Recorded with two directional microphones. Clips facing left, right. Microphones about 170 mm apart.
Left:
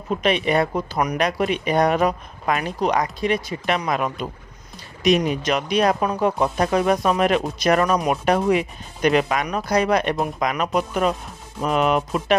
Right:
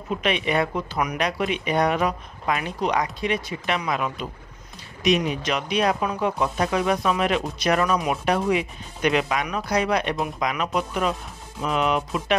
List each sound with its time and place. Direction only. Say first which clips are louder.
0.1 s speech: left 4 dB; 40° left (ahead or behind)